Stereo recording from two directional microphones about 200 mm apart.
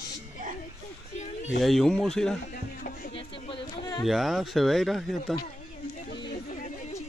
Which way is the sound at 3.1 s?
25° left (ahead or behind).